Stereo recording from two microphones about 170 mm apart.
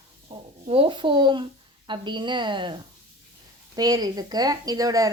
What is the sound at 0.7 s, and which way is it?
A woman's voice, 30° right (ahead or behind).